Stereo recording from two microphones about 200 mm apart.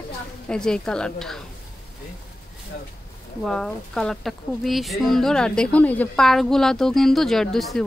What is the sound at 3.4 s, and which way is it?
Speech, 5° left (ahead or behind).